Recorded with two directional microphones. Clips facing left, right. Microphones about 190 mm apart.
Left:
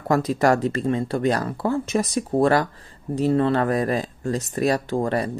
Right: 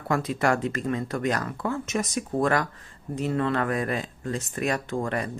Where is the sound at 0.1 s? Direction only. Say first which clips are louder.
Left 5 dB; 40° left (ahead or behind).